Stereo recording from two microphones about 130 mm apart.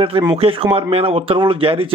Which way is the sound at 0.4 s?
45° right (ahead or behind).